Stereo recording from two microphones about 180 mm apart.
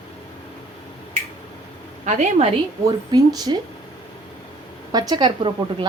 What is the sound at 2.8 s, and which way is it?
Speech, 20° right (ahead or behind).